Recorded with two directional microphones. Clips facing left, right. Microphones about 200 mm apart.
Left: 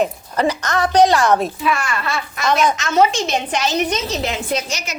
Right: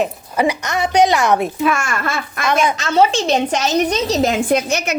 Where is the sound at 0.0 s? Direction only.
10° right (ahead or behind).